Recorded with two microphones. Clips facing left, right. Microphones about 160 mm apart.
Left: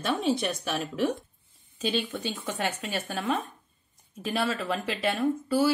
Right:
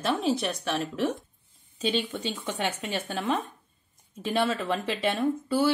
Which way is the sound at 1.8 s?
20° right (ahead or behind).